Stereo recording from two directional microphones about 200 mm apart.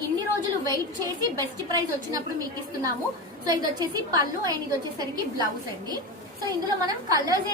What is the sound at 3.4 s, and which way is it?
A woman's voice, 20° right (ahead or behind).